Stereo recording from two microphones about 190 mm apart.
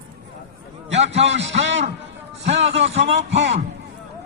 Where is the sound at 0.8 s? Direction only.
35° right (ahead or behind).